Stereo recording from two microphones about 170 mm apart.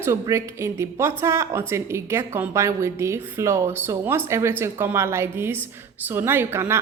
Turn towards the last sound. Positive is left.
turn(degrees=-15)  # may be behind; listen again after turning